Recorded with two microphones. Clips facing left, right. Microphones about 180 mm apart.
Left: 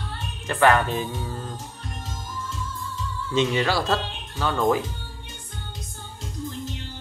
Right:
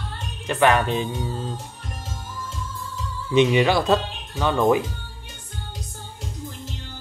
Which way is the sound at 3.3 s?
15° right (ahead or behind).